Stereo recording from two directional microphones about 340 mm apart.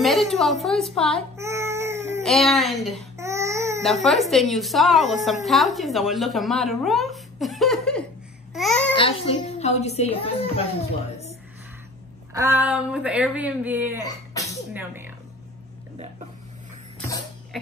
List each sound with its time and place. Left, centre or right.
0.0 s a woman's voice: centre
8.9 s a woman's voice: centre
12.4 s speech: centre
14.0 s sneeze: centre
14.7 s speech: centre